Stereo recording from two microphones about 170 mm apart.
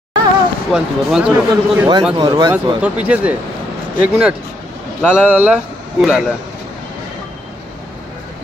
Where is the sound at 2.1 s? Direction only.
25° right (ahead or behind).